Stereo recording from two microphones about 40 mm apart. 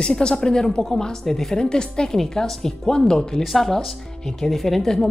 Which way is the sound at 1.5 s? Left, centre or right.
Left.